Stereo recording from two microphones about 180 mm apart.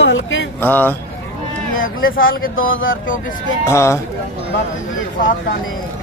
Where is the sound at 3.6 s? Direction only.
15° left (ahead or behind).